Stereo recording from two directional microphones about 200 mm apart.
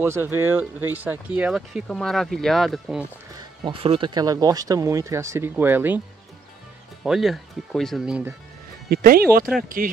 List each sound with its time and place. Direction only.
0.0 s speech: 10° right (ahead or behind)
3.3 s speech: 25° right (ahead or behind)
7.0 s speech: centre (ahead or behind)
8.8 s speech: 50° right (ahead or behind)